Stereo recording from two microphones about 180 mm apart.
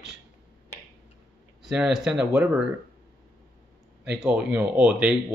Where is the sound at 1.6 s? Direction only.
5° right (ahead or behind).